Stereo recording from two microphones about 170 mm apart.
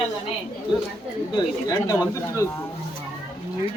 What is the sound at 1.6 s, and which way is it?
Speech, 20° left (ahead or behind).